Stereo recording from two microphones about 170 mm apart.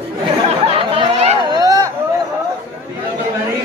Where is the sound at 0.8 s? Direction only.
40° right (ahead or behind).